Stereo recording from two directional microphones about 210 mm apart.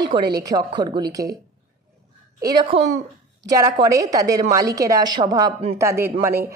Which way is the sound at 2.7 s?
25° right (ahead or behind).